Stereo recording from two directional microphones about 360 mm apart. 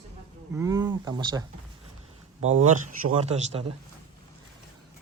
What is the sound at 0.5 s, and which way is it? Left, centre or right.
Speech, centre.